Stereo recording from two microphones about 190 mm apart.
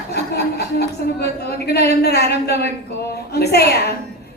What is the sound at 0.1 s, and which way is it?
A woman's voice, 60° left (ahead or behind).